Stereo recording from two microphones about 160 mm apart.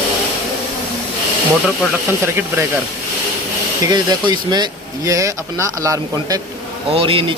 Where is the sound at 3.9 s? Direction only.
25° right (ahead or behind).